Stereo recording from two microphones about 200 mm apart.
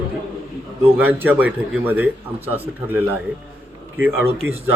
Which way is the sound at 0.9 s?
10° right (ahead or behind).